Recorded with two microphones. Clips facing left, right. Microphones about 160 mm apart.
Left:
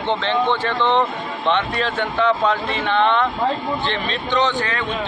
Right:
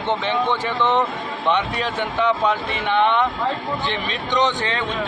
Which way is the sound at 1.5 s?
15° right (ahead or behind).